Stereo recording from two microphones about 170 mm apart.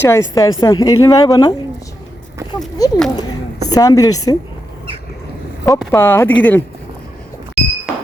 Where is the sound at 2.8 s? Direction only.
20° left (ahead or behind).